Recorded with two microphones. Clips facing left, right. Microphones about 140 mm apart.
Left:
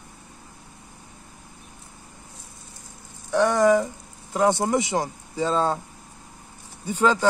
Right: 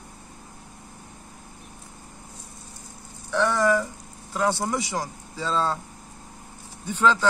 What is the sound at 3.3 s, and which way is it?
Speech, 45° left (ahead or behind).